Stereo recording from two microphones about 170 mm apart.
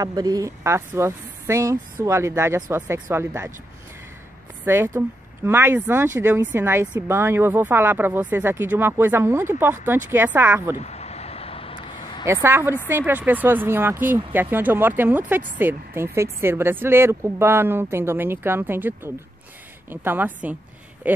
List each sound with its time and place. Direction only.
0.0 s speech: 20° right (ahead or behind)
4.6 s speech: 15° right (ahead or behind)
10.8 s vehicle: 40° left (ahead or behind)
12.3 s speech: 15° right (ahead or behind)